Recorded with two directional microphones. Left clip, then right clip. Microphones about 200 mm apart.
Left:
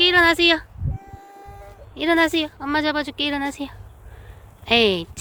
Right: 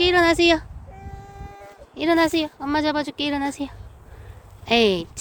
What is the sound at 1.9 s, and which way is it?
Speech, centre (ahead or behind).